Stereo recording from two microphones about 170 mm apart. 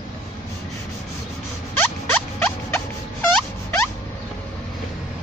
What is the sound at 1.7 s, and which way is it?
Rodents, 10° left (ahead or behind).